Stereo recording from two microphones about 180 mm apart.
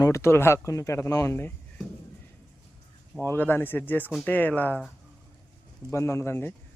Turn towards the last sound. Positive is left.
turn(degrees=15)  # may be behind; listen again after turning